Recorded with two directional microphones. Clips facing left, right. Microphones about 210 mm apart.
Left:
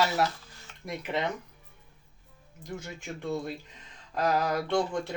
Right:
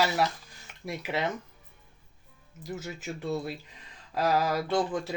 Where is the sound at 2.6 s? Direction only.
5° right (ahead or behind).